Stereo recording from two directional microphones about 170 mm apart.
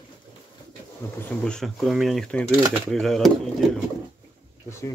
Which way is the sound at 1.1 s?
5° left (ahead or behind).